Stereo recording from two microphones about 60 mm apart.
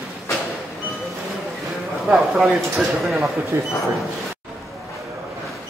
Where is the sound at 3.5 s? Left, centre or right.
Right.